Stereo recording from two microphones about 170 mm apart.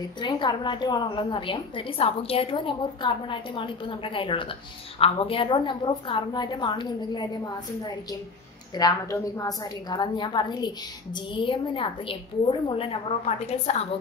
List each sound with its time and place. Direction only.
0.2 s a woman's voice: 25° left (ahead or behind)